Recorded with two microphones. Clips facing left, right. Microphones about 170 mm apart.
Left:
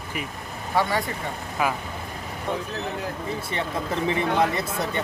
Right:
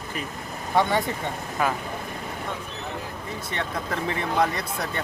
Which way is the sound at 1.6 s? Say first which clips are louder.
Even; 5° left (ahead or behind).